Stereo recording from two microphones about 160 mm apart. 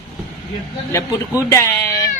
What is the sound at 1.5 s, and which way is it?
Speech, 15° left (ahead or behind).